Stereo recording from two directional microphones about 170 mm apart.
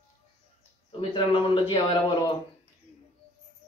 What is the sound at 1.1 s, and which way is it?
Speech, 30° left (ahead or behind).